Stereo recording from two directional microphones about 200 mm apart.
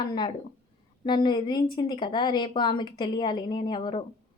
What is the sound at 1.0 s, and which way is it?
A woman's voice, 20° left (ahead or behind).